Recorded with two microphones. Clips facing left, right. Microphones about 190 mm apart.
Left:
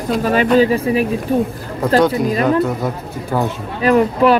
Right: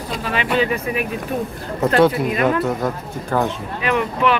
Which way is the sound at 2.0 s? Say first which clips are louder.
Left 1 dB; centre (ahead or behind).